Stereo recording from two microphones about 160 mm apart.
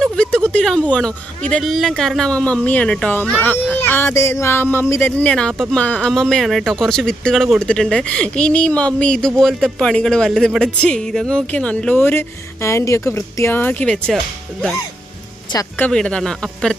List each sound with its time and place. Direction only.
0.0 s a sound: 5° left (ahead or behind)
0.9 s speech: 5° left (ahead or behind)
15.8 s speech: 5° left (ahead or behind)